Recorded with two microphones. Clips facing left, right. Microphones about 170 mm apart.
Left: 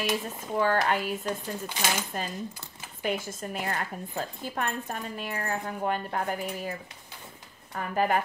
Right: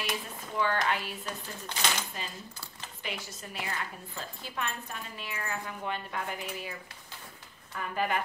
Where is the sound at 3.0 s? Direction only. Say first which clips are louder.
Left 10 dB; 50° left (ahead or behind).